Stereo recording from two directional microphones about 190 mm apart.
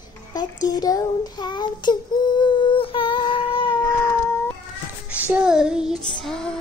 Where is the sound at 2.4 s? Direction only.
30° left (ahead or behind).